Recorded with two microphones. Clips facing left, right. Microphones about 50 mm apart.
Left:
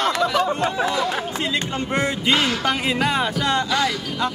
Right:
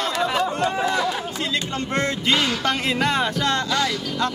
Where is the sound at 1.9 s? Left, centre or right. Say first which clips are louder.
Left 1 dB; centre.